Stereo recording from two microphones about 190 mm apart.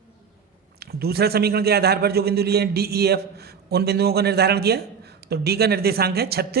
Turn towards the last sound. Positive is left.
turn(degrees=-55)  # may be behind; listen again after turning